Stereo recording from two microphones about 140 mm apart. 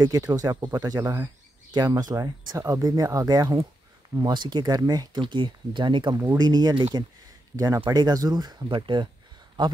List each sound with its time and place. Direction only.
0.0 s speech: 30° right (ahead or behind)